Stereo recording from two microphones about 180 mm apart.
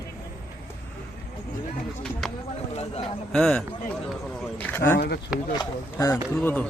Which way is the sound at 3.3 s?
5° left (ahead or behind).